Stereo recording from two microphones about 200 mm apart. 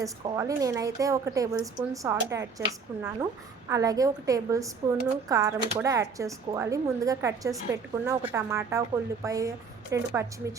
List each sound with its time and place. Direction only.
0.0 s a woman's voice: 15° right (ahead or behind)